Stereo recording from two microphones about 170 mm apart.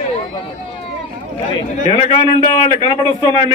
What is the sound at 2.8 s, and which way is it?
Speech, 25° left (ahead or behind).